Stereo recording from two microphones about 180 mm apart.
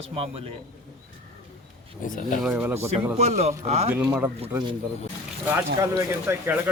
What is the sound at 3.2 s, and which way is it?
Speech, 40° right (ahead or behind).